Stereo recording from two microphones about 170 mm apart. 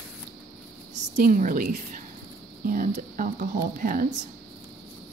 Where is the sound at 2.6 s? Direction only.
55° right (ahead or behind).